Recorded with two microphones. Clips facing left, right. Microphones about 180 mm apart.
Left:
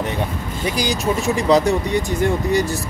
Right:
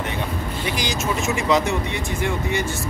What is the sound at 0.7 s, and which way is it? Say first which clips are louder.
Speech: left 5 dB; 35° left (ahead or behind).